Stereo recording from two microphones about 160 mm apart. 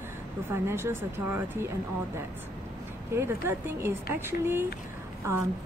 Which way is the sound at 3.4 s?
15° right (ahead or behind).